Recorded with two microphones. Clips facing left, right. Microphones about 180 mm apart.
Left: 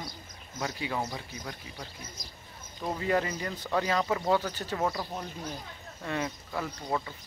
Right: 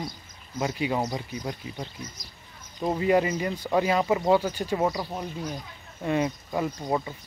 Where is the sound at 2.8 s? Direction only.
20° right (ahead or behind).